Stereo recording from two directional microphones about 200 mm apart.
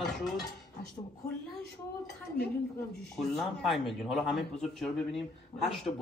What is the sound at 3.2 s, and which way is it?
Speech, centre (ahead or behind).